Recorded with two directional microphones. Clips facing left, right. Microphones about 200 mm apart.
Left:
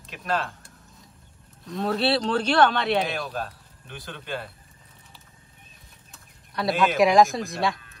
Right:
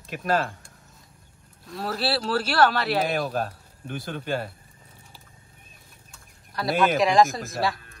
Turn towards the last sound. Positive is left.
turn(degrees=0)  # may be behind; listen again after turning